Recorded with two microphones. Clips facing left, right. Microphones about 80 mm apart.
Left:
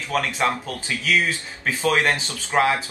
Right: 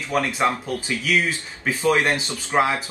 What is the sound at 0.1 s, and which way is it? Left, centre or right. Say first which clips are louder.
Speech: right 1 dB; right.